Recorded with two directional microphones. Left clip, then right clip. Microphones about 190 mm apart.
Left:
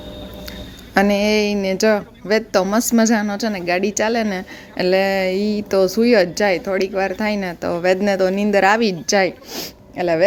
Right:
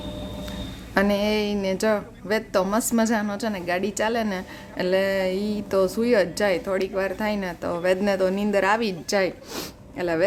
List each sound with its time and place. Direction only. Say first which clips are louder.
0.9 s a woman's voice: left 6 dB; 20° left (ahead or behind)